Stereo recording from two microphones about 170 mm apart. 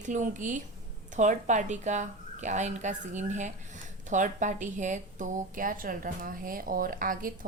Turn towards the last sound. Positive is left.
turn(degrees=-55)  # may be behind; listen again after turning